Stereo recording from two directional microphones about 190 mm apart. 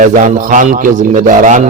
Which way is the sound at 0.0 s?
40° right (ahead or behind).